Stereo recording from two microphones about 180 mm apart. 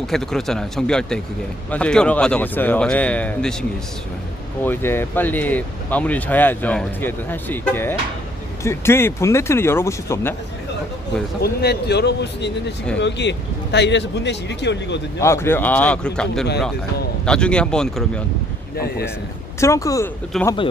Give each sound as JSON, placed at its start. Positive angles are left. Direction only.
{"t": 0.0, "sound": "speech", "side_deg": 0}
{"t": 4.6, "sound": "speech", "side_deg": 10}
{"t": 11.4, "sound": "speech", "side_deg": 65}
{"t": 15.1, "sound": "speech", "side_deg": 15}
{"t": 17.2, "sound": "speech", "side_deg": 5}
{"t": 18.8, "sound": "speech", "side_deg": 60}
{"t": 19.6, "sound": "speech", "side_deg": 15}
{"t": 20.3, "sound": "speech", "side_deg": 0}